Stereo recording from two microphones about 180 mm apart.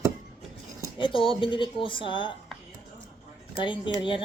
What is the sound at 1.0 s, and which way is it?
Speech, 30° left (ahead or behind).